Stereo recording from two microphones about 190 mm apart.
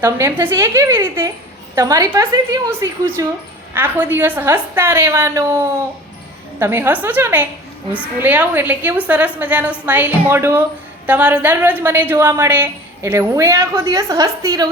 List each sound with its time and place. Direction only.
0.0 s a woman's voice: 10° right (ahead or behind)